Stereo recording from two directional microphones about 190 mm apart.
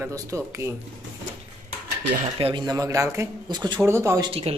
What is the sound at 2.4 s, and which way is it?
Speech, 25° right (ahead or behind).